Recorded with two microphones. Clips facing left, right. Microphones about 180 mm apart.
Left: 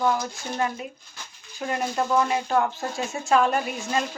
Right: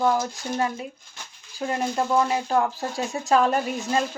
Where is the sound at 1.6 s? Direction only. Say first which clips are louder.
Right 1 dB; 30° right (ahead or behind).